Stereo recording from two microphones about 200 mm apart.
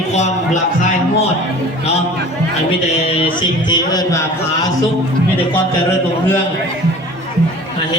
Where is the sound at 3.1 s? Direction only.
25° left (ahead or behind).